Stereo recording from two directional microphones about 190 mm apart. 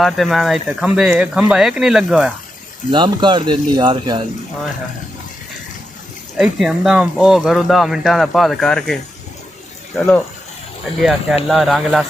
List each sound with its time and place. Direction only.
0.0 s speech: centre (ahead or behind)
2.9 s speech: 25° right (ahead or behind)
6.3 s speech: 5° right (ahead or behind)
11.0 s speech: centre (ahead or behind)